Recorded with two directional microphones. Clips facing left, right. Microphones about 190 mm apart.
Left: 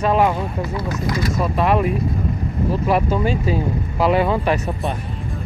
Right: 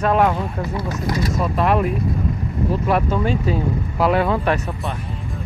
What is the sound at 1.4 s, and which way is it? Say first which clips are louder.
Speech: left 1 dB; centre (ahead or behind).